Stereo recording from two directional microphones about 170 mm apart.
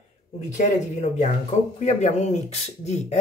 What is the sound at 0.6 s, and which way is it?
Speech, 45° left (ahead or behind).